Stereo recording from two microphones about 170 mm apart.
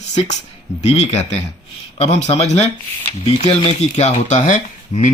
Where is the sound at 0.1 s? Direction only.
40° left (ahead or behind).